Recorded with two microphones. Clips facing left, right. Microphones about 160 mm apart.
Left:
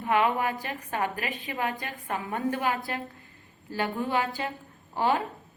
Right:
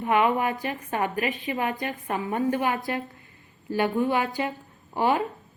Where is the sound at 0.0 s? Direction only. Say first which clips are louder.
Right 3 dB; 20° right (ahead or behind).